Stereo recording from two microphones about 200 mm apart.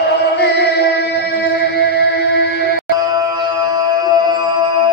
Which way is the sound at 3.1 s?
20° right (ahead or behind).